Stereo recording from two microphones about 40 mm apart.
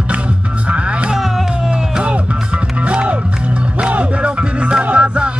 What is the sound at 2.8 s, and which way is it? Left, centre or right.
Music, right.